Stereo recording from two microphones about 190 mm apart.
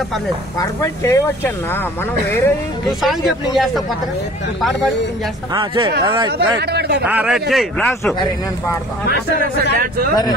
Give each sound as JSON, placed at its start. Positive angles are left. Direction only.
{"t": 0.6, "sound": "speech", "side_deg": 15}
{"t": 3.0, "sound": "a man's voice", "side_deg": 0}
{"t": 5.5, "sound": "speech", "side_deg": -25}
{"t": 6.3, "sound": "speech", "side_deg": -60}
{"t": 7.1, "sound": "a man's voice", "side_deg": -5}
{"t": 9.8, "sound": "a man's voice", "side_deg": -50}